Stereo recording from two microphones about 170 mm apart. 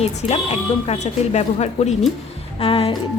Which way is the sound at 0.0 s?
40° left (ahead or behind).